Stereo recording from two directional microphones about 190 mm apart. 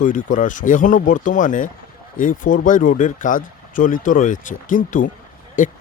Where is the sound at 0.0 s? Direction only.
45° left (ahead or behind).